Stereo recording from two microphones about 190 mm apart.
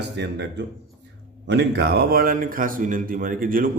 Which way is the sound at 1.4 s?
60° right (ahead or behind).